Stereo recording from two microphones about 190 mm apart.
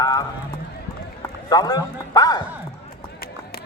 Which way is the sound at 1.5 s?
20° left (ahead or behind).